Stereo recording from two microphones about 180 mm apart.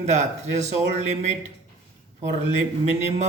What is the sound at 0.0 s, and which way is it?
Speech, 40° right (ahead or behind).